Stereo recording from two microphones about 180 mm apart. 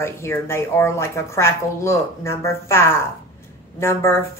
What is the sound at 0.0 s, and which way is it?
Speech, 15° left (ahead or behind).